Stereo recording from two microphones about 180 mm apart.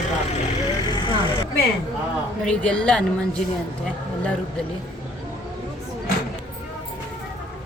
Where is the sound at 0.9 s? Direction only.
25° left (ahead or behind).